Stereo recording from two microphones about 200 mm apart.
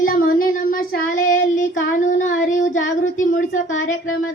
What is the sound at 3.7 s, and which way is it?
Speech, 80° left.